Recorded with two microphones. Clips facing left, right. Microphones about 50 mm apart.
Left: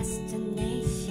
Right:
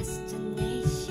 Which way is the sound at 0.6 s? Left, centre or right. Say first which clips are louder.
Right 4 dB; centre.